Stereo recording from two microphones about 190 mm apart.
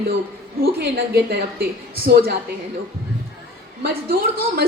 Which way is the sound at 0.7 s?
55° right (ahead or behind).